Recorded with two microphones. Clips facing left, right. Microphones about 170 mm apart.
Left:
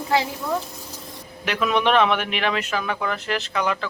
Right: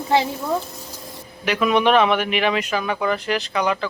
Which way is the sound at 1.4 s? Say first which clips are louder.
Right 3 dB; 5° right (ahead or behind).